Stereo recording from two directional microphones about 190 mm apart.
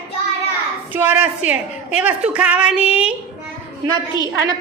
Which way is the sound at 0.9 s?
10° right (ahead or behind).